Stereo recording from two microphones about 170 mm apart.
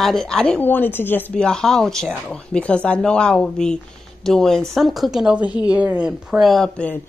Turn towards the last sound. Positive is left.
turn(degrees=5)  # may be behind; listen again after turning